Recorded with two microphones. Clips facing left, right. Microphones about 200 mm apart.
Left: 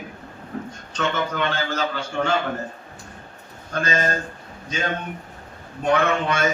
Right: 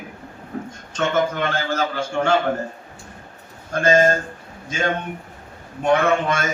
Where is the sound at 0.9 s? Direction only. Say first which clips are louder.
Right 4 dB; 45° right (ahead or behind).